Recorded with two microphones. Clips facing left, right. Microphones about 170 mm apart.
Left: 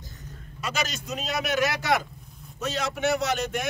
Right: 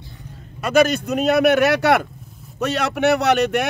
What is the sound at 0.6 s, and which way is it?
Speech, 55° right (ahead or behind).